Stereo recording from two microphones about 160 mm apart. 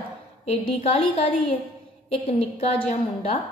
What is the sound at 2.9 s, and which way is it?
Speech, 45° left (ahead or behind).